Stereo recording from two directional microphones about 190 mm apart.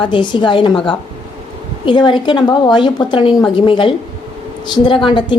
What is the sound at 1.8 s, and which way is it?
A woman's voice, 25° left (ahead or behind).